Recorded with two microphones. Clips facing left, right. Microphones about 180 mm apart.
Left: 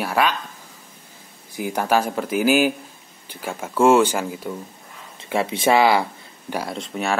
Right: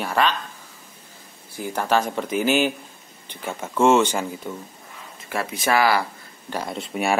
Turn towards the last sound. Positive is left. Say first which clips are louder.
# right 1 dB
turn(degrees=-10)  # may be behind; listen again after turning